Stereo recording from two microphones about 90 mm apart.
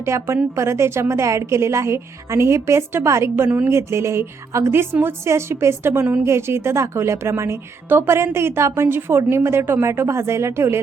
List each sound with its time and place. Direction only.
0.0 s a woman's voice: 30° right (ahead or behind)